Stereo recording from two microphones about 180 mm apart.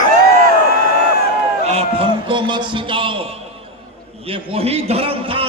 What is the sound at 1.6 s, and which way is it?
A man's voice, 30° right (ahead or behind).